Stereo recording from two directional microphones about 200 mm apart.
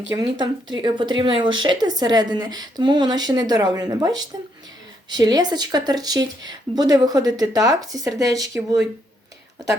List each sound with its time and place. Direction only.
0.2 s speech: 20° right (ahead or behind)